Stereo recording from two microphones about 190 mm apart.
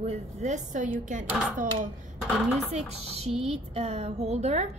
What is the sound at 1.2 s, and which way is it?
Speech, 10° right (ahead or behind).